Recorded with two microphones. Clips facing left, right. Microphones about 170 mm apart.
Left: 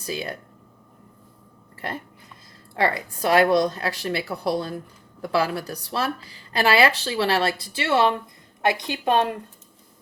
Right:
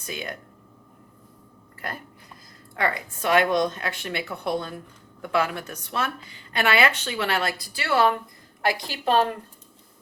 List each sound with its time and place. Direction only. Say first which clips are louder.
0.0 s speech: left 4 dB; 35° left (ahead or behind)
1.8 s a woman's voice: left 3 dB; 25° left (ahead or behind)